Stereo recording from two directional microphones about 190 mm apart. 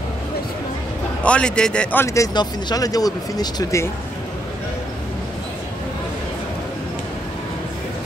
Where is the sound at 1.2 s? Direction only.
5° left (ahead or behind).